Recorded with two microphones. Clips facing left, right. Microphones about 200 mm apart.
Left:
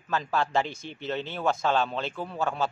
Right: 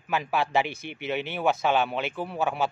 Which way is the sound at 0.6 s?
65° right (ahead or behind).